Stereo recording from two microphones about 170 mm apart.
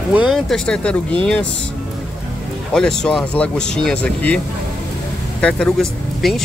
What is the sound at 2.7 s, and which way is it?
Speech, 5° left (ahead or behind).